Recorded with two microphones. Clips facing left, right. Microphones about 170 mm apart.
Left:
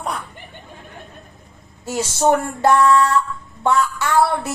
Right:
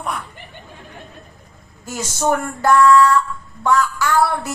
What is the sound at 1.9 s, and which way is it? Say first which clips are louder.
Speech: left 3 dB; 30° left (ahead or behind).